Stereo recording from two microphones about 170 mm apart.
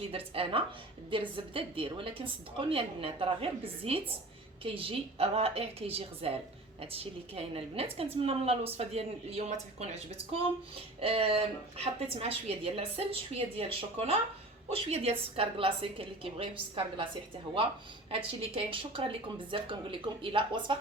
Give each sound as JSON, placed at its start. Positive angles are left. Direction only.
{"t": 0.1, "sound": "a woman's voice", "side_deg": -35}
{"t": 11.0, "sound": "a woman's voice", "side_deg": -35}
{"t": 18.1, "sound": "a woman's voice", "side_deg": -35}